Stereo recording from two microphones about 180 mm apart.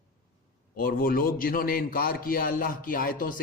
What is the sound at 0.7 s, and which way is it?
A man's voice, 55° left (ahead or behind).